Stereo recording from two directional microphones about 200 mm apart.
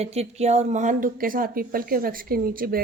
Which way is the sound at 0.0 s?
30° right (ahead or behind).